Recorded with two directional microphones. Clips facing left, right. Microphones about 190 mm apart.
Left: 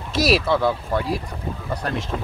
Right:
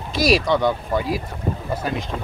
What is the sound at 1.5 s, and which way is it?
Boat, 50° right (ahead or behind).